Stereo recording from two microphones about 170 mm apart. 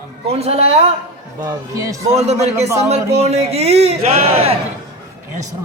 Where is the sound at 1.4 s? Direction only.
20° right (ahead or behind).